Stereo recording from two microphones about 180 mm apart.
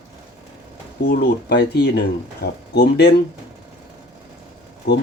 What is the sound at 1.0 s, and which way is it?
Speech, 60° left (ahead or behind).